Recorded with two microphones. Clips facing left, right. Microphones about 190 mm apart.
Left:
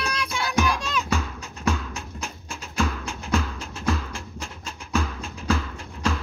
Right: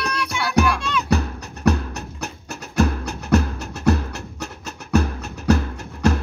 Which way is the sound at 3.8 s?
70° right (ahead or behind).